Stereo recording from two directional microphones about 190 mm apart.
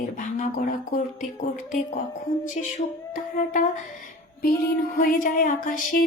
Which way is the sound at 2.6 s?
40° left (ahead or behind).